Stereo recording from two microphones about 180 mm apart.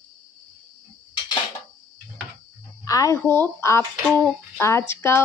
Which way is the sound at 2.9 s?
20° left (ahead or behind).